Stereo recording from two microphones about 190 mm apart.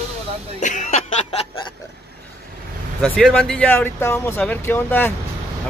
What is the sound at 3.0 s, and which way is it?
Speech, centre (ahead or behind).